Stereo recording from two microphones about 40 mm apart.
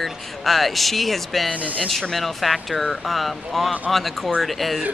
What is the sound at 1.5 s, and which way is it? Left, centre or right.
Speech, right.